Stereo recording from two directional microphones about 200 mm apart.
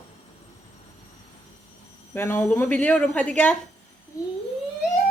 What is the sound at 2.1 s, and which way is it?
A woman's voice, 10° left (ahead or behind).